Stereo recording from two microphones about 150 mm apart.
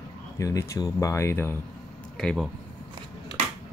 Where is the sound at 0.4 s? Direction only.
20° left (ahead or behind).